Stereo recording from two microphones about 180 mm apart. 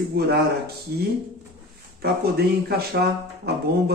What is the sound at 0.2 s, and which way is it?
Speech, 60° right (ahead or behind).